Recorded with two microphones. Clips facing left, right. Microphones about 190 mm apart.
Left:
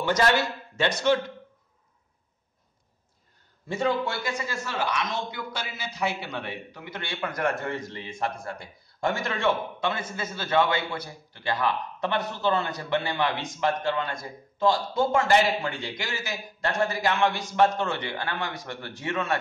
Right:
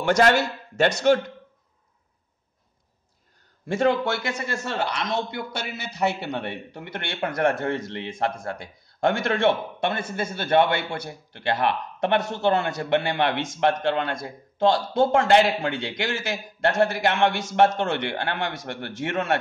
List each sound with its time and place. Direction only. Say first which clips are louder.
0.2 s speech: right 4 dB; 45° right (ahead or behind)
3.6 s a man's voice: right 5 dB; 85° right; by 19.3 s 65° right (ahead or behind)